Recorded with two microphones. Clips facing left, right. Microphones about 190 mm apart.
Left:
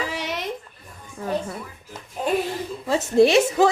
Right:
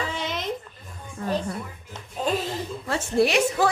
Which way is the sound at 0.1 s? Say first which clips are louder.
Left 1 dB; 75° left (ahead or behind).